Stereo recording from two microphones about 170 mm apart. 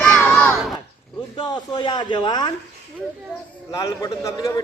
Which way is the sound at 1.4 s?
25° left (ahead or behind).